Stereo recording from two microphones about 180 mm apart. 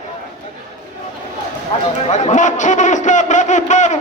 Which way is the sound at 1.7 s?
40° left (ahead or behind).